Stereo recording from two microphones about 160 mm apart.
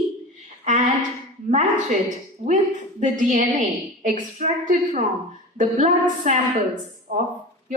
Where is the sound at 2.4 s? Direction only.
50° right (ahead or behind).